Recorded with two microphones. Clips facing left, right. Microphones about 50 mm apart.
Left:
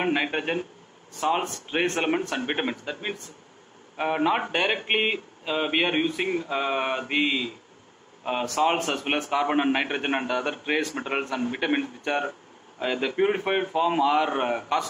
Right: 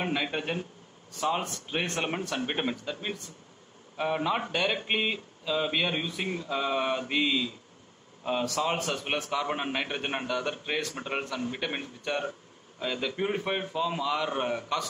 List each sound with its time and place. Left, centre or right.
0.0 s a man's voice: left